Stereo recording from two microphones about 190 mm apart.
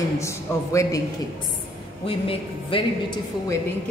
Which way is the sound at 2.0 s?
30° left (ahead or behind).